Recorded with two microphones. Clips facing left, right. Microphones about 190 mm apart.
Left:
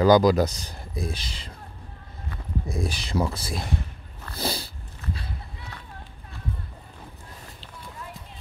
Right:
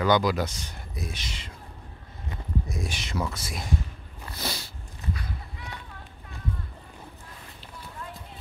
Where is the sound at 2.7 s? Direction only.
35° left (ahead or behind).